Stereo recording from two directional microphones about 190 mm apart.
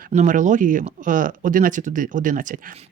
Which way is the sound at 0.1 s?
40° right (ahead or behind).